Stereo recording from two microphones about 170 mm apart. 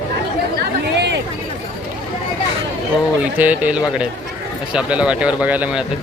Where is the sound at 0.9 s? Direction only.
90° right.